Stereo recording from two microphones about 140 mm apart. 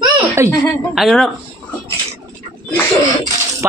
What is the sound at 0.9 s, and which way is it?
Speech, centre (ahead or behind).